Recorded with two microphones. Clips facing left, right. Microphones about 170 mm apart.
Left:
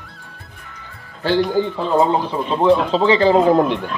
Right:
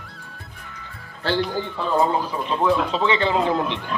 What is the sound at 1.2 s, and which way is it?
Speech, 15° left (ahead or behind).